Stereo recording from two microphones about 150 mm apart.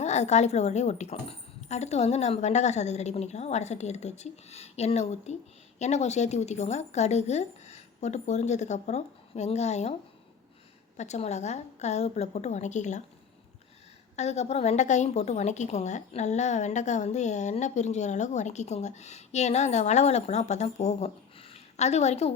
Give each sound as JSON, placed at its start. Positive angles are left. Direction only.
{"t": 0.0, "sound": "a woman's voice", "side_deg": 50}
{"t": 10.9, "sound": "a woman's voice", "side_deg": 50}
{"t": 14.2, "sound": "a woman's voice", "side_deg": 50}